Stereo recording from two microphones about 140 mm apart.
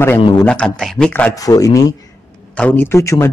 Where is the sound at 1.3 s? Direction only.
25° left (ahead or behind).